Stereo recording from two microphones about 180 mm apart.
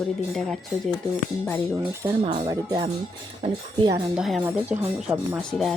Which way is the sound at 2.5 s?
20° right (ahead or behind).